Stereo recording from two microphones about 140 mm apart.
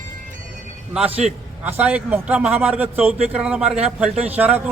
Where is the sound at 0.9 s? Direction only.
5° right (ahead or behind).